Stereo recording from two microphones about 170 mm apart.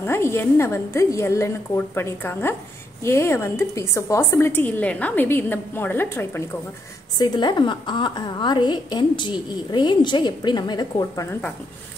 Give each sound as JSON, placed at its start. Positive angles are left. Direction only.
{"t": 0.0, "sound": "a woman's voice", "side_deg": 15}
{"t": 7.2, "sound": "a woman's voice", "side_deg": 25}